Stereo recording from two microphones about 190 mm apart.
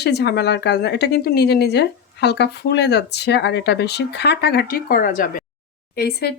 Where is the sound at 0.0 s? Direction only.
60° left (ahead or behind).